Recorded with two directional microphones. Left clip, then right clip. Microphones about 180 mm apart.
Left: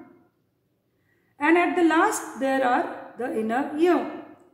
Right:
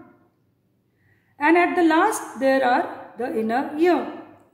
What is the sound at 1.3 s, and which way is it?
Speech, 25° right (ahead or behind).